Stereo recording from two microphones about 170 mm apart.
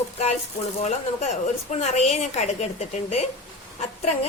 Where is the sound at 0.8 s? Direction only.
40° left (ahead or behind).